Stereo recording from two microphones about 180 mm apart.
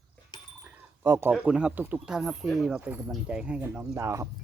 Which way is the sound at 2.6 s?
5° right (ahead or behind).